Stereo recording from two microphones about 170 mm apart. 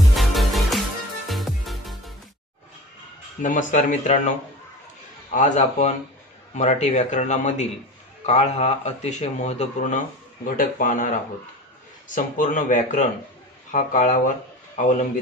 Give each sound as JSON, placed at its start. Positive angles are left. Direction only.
{"t": 0.0, "sound": "music", "side_deg": 0}
{"t": 3.4, "sound": "speech", "side_deg": 45}
{"t": 5.3, "sound": "speech", "side_deg": 45}